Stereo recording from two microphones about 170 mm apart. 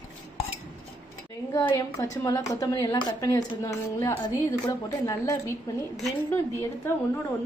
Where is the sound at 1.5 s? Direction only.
20° left (ahead or behind).